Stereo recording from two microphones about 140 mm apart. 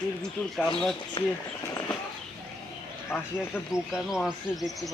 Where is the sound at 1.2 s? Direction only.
40° left (ahead or behind).